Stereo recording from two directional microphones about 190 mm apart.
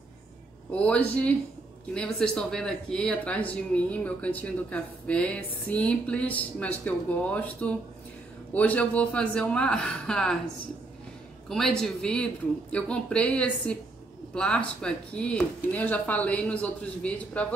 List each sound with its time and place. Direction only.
0.7 s speech: 5° left (ahead or behind)
11.4 s speech: 5° left (ahead or behind)